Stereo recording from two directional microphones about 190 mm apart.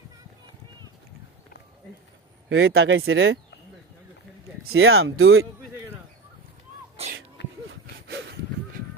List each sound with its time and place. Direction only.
2.5 s speech: 90° right
4.7 s speech: 90° right
7.7 s a sound: 70° right (ahead or behind)